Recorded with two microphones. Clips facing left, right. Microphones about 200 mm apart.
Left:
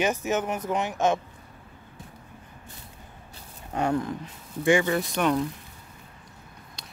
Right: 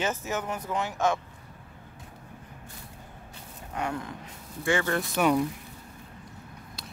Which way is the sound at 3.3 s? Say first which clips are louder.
Left 4 dB; 35° left (ahead or behind).